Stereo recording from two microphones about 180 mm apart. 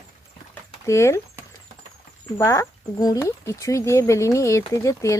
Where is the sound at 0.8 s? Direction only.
15° left (ahead or behind).